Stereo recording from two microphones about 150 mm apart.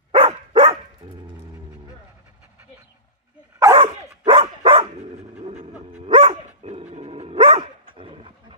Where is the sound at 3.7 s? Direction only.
35° right (ahead or behind).